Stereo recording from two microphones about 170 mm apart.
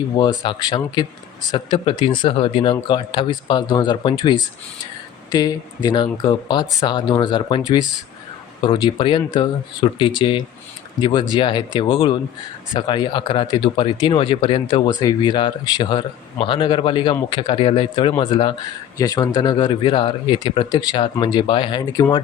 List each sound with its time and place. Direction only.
0.2 s speech: 25° left (ahead or behind)